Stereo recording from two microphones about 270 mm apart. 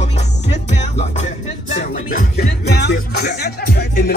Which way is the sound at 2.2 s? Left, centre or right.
Left.